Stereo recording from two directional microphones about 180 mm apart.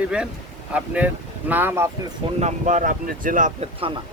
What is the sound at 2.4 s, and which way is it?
Speech, 40° right (ahead or behind).